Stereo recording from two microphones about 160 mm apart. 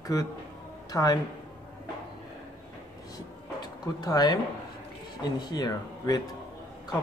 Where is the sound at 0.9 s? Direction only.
25° left (ahead or behind).